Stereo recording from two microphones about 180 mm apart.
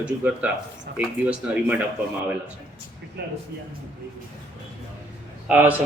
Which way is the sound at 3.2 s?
65° right (ahead or behind).